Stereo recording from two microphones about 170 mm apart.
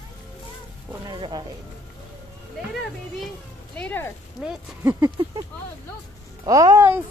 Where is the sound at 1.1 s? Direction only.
25° right (ahead or behind).